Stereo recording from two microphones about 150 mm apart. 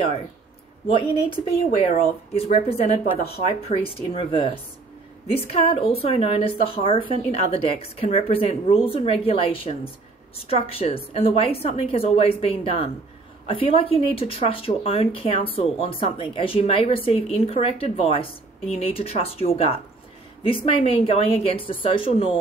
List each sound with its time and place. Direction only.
1.9 s speech: 45° left (ahead or behind)
5.5 s speech: 40° left (ahead or behind)